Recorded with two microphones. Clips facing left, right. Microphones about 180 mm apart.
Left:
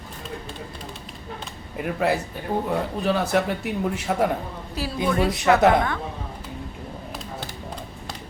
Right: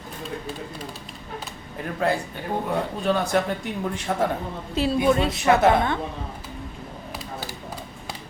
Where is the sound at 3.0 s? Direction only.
5° left (ahead or behind).